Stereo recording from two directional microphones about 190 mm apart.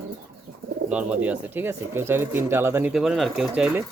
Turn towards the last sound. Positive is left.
turn(degrees=-5)  # may be behind; listen again after turning